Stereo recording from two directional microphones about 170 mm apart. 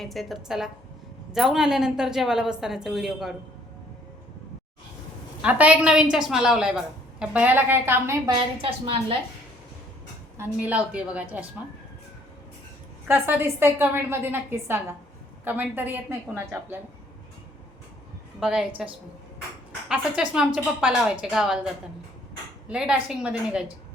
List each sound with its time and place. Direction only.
0.0 s a woman's voice: centre (ahead or behind)
5.4 s a woman's voice: 10° right (ahead or behind)
8.4 s a woman's voice: 30° right (ahead or behind)
10.3 s a woman's voice: 10° right (ahead or behind)
13.1 s a woman's voice: 10° right (ahead or behind)
18.3 s a woman's voice: 5° right (ahead or behind)
19.9 s a woman's voice: 5° right (ahead or behind)
22.7 s a woman's voice: 5° right (ahead or behind)